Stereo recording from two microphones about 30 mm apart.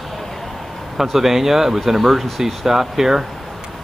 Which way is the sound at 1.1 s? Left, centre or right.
Centre.